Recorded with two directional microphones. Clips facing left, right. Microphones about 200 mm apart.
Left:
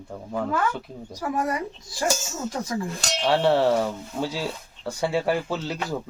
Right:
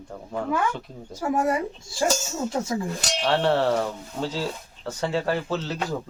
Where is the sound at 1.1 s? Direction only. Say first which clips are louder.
Right 3 dB; 25° right (ahead or behind).